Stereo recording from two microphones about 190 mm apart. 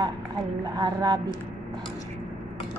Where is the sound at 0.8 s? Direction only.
20° right (ahead or behind).